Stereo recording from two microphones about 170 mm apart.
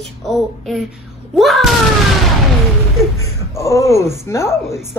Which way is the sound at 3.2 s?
15° left (ahead or behind).